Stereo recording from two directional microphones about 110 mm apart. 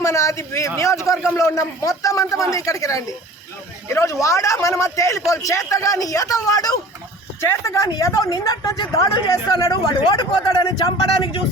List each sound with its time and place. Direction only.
0.0 s a woman's voice: 25° left (ahead or behind)